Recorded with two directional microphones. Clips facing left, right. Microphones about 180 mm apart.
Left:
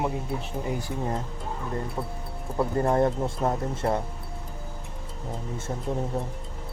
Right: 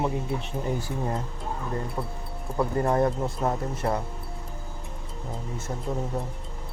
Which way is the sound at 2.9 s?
25° left (ahead or behind).